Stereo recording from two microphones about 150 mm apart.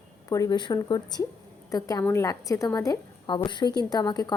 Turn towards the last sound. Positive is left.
turn(degrees=25)  # may be behind; listen again after turning